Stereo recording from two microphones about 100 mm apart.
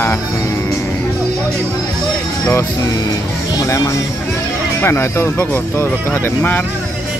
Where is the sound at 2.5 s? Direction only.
35° left (ahead or behind); by 6.6 s 20° left (ahead or behind).